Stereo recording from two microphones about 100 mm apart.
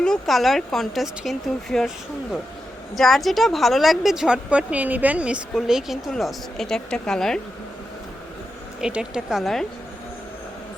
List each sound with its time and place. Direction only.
0.0 s a woman's voice: 5° left (ahead or behind)
2.9 s a woman's voice: centre (ahead or behind)
8.8 s a woman's voice: 10° right (ahead or behind)